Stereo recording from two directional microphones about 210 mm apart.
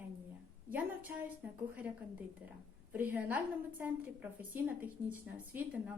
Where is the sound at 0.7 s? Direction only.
10° right (ahead or behind).